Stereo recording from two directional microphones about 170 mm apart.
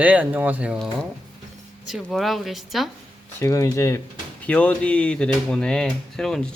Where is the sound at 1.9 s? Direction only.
Centre (ahead or behind).